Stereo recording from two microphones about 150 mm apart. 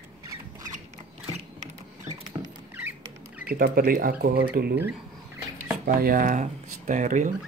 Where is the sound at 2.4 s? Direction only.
35° right (ahead or behind).